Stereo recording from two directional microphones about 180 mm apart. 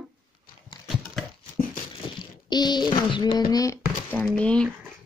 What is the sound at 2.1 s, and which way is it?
A child's voice, 25° left (ahead or behind).